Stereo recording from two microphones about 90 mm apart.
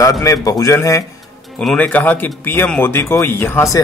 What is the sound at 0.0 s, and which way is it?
A man's voice, 40° left (ahead or behind).